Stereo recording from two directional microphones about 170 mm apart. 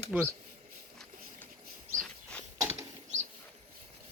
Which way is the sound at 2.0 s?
5° left (ahead or behind).